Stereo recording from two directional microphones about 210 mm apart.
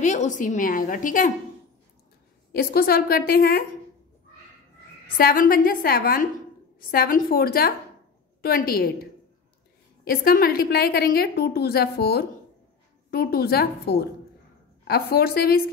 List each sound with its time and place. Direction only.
0.0 s a woman's voice: 35° left (ahead or behind)
2.5 s a woman's voice: 45° left (ahead or behind)
5.1 s a woman's voice: 40° left (ahead or behind)
10.0 s a woman's voice: 45° left (ahead or behind)